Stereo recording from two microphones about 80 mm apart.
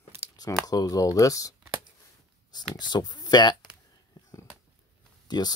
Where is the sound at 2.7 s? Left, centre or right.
Left.